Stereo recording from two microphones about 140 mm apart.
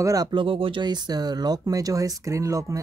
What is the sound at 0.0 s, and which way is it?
Speech, 25° right (ahead or behind).